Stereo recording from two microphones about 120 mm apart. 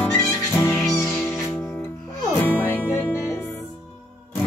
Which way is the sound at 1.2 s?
20° left (ahead or behind).